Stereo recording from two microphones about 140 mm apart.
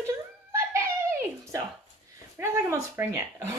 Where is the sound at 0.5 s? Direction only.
20° right (ahead or behind).